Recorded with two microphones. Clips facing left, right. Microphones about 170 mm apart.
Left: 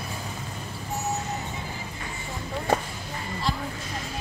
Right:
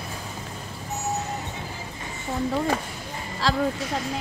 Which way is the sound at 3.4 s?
90° right.